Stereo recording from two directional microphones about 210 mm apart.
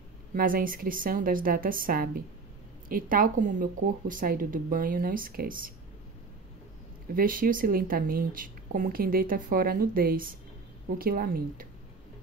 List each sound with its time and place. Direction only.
0.3 s speech: 40° right (ahead or behind)
7.2 s speech: 40° right (ahead or behind)